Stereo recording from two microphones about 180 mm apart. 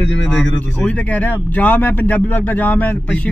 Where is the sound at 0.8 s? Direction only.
10° left (ahead or behind).